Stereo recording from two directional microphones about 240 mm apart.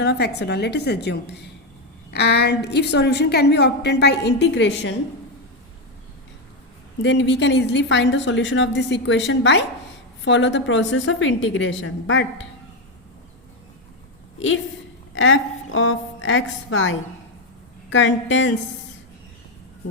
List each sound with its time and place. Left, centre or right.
0.0 s a woman's voice: left
7.0 s a woman's voice: left
14.3 s a woman's voice: left